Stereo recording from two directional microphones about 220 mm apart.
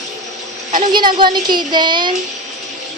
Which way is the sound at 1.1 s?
20° right (ahead or behind).